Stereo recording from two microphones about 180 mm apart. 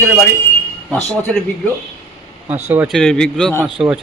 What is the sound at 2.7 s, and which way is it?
Speech, 5° right (ahead or behind).